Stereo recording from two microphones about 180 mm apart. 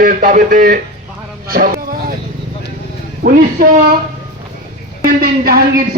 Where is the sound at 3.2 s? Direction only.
50° right (ahead or behind).